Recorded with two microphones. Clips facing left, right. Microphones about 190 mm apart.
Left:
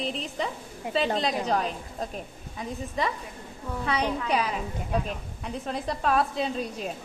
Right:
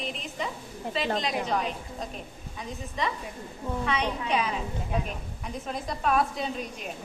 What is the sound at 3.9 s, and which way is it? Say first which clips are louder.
Speech: left 3 dB; 35° left (ahead or behind).